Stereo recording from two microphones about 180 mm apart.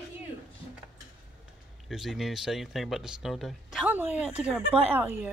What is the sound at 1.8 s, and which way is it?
Speech, centre (ahead or behind).